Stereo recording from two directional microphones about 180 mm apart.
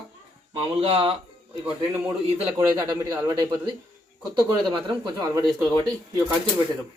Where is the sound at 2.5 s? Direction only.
20° right (ahead or behind).